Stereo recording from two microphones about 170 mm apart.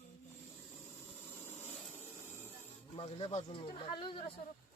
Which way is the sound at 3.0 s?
35° left (ahead or behind).